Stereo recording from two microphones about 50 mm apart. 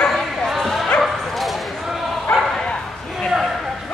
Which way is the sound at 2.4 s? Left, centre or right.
Centre.